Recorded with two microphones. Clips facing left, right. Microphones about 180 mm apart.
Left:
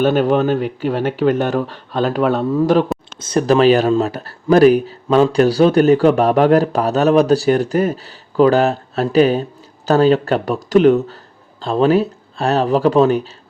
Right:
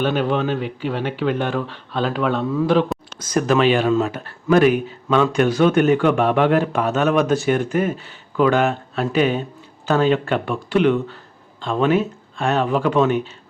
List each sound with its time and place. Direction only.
0.0 s speech: 45° left (ahead or behind)
3.2 s speech: 30° left (ahead or behind)